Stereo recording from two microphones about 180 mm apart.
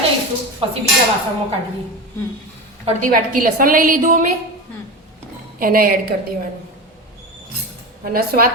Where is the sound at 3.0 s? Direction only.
50° right (ahead or behind).